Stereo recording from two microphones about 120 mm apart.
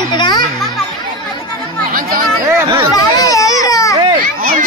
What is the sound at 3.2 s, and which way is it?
Baby cry, 30° left (ahead or behind).